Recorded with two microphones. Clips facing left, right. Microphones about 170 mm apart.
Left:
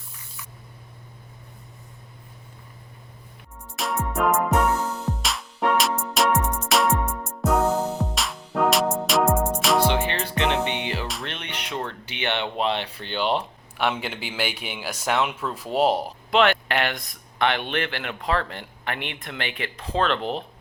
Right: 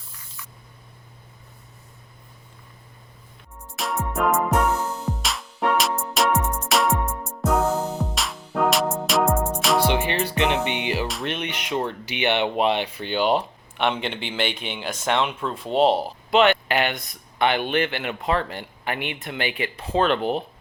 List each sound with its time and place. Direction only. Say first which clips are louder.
3.8 s music: even; centre (ahead or behind)
7.7 s music: left 1 dB; 10° left (ahead or behind)
8.1 s music: even; centre (ahead or behind)
9.9 s music: right 2 dB; 15° right (ahead or behind)
11.3 s speech: right 6 dB; 10° right (ahead or behind)
11.7 s speech: right 5 dB; 25° right (ahead or behind)
12.1 s speech: right 5 dB; 10° right (ahead or behind)
13.7 s speech: right 2 dB; 5° left (ahead or behind)